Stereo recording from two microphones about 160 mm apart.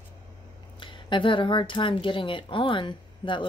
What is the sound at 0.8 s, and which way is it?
A woman's voice, 30° left (ahead or behind).